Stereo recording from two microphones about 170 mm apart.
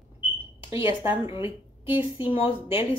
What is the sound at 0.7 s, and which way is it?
Speech, 15° right (ahead or behind).